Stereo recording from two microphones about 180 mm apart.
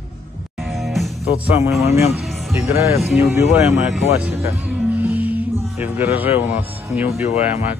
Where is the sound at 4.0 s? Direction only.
10° right (ahead or behind).